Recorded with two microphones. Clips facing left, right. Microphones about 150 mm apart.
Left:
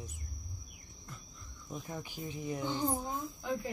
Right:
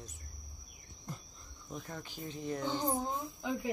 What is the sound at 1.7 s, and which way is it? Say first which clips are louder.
Speech: left 2 dB; 10° left (ahead or behind).